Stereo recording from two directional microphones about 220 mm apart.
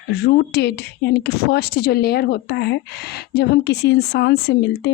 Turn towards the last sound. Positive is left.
turn(degrees=50)  # may be behind; listen again after turning